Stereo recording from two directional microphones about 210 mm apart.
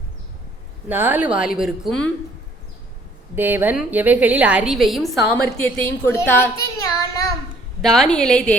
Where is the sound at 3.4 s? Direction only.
10° right (ahead or behind); by 6.5 s 10° left (ahead or behind).